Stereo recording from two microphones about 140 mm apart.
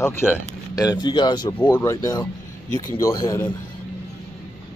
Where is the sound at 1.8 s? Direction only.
25° left (ahead or behind).